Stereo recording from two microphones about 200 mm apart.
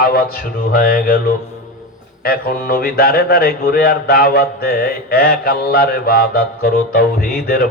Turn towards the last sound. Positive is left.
turn(degrees=50)  # may be behind; listen again after turning